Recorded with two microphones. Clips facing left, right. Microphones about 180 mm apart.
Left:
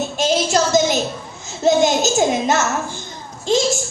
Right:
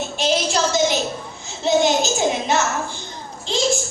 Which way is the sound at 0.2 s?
45° left (ahead or behind).